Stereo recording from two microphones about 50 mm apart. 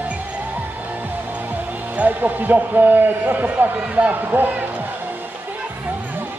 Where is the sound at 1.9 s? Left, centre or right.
Right.